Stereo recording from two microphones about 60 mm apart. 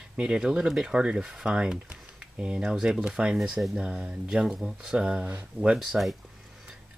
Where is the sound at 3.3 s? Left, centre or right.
Centre.